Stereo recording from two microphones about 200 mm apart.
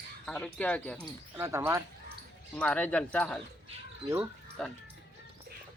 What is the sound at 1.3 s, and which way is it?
Speech, 10° right (ahead or behind).